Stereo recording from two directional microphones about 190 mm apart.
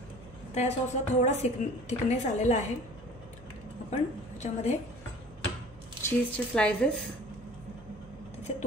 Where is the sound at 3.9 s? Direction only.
40° left (ahead or behind).